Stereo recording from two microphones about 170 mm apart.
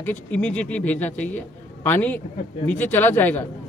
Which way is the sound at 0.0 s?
10° left (ahead or behind).